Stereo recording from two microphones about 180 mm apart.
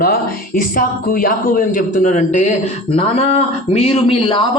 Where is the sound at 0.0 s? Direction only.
55° left (ahead or behind).